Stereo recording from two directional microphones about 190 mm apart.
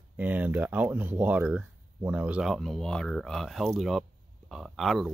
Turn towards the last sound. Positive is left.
turn(degrees=0)  # may be behind; listen again after turning